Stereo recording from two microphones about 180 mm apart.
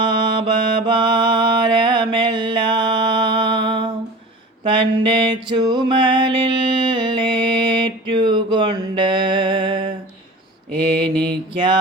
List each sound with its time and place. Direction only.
0.0 s mantra: 25° right (ahead or behind)
4.6 s music: 30° right (ahead or behind)
8.1 s a sound: 25° right (ahead or behind)
11.3 s mantra: 25° right (ahead or behind)